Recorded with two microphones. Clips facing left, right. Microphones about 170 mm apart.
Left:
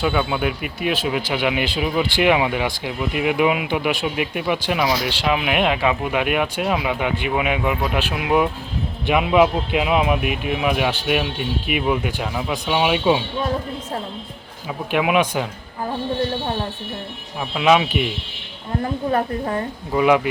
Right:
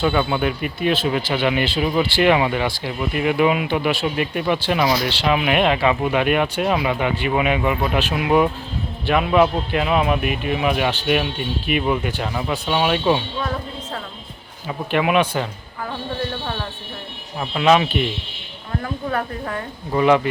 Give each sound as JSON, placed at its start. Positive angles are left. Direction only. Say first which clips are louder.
{"t": 0.0, "sound": "speech", "louder": "right 1 dB", "side_deg": 5}
{"t": 14.7, "sound": "speech", "louder": "even", "side_deg": 5}
{"t": 17.4, "sound": "speech", "louder": "right 1 dB", "side_deg": 5}
{"t": 18.8, "sound": "a woman's voice", "louder": "left 4 dB", "side_deg": 30}
{"t": 19.9, "sound": "speech", "louder": "right 1 dB", "side_deg": 5}